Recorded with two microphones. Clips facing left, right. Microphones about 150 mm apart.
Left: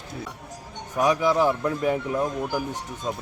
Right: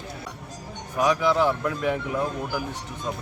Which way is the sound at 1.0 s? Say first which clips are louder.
Left 1 dB; 10° left (ahead or behind).